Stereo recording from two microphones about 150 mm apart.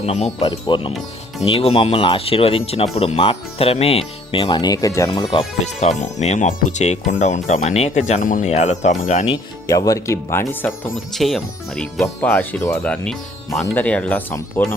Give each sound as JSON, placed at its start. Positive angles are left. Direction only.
{"t": 0.0, "sound": "speech", "side_deg": 45}
{"t": 5.1, "sound": "speech", "side_deg": 35}
{"t": 6.0, "sound": "speech", "side_deg": 50}
{"t": 9.6, "sound": "speech", "side_deg": 20}
{"t": 10.7, "sound": "speech", "side_deg": 0}